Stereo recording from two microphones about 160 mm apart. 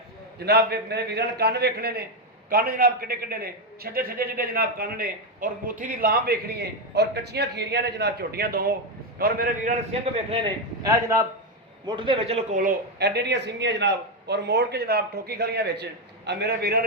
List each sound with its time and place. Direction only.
0.3 s a man's voice: 90° right
2.5 s a man's voice: 65° right (ahead or behind)
9.1 s a man's voice: 65° right (ahead or behind)
9.9 s speech: 40° right (ahead or behind)
10.8 s a man's voice: 20° right (ahead or behind)
11.9 s speech: 30° right (ahead or behind)
12.5 s a man's voice: 60° right (ahead or behind); by 16.8 s 80° right